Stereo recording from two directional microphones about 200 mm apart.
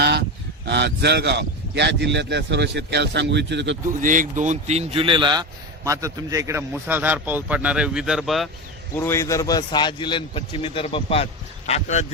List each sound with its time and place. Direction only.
0.0 s speech: 55° right (ahead or behind)
4.0 s a man's voice: 40° right (ahead or behind); by 8.4 s centre (ahead or behind)
9.0 s a man's voice: 10° left (ahead or behind); by 12.0 s 35° left (ahead or behind)